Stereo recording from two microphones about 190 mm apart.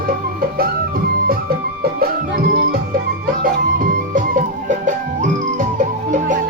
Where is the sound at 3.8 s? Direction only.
45° right (ahead or behind).